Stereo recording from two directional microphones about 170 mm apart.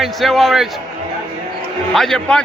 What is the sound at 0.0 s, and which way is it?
Speech, centre (ahead or behind).